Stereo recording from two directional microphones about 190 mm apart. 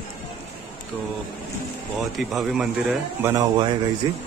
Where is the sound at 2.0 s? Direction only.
Centre (ahead or behind).